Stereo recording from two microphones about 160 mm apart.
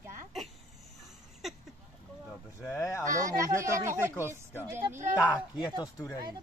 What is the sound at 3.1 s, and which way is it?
Speech, 20° right (ahead or behind).